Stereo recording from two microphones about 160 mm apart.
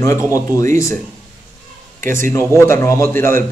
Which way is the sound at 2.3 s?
15° left (ahead or behind).